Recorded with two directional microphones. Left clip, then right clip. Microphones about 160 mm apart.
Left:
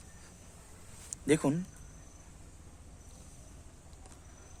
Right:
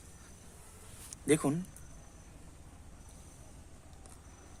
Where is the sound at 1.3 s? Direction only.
25° left (ahead or behind).